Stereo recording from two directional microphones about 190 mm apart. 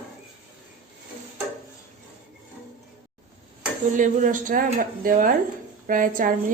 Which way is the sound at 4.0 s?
45° right (ahead or behind).